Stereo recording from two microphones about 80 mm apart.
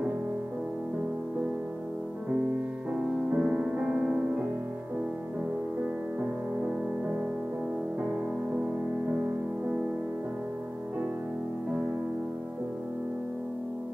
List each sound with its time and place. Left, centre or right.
2.9 s music: centre
6.6 s music: centre